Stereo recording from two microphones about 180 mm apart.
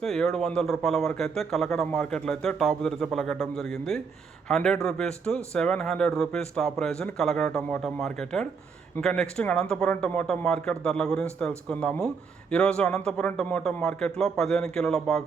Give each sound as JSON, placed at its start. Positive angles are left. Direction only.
{"t": 0.0, "sound": "speech", "side_deg": 0}